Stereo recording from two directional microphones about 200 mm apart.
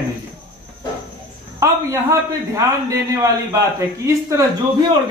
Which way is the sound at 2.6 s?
15° right (ahead or behind).